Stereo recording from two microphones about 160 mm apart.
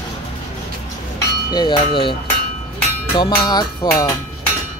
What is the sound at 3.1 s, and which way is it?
Music, 30° left (ahead or behind).